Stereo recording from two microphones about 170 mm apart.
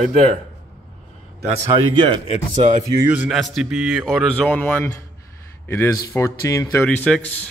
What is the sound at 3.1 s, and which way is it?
Speech, centre (ahead or behind).